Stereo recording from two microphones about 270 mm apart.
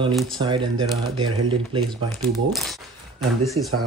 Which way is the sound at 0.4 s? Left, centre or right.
Centre.